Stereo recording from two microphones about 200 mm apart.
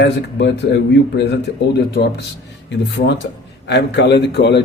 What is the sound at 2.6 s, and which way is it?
Speech, 60° left (ahead or behind).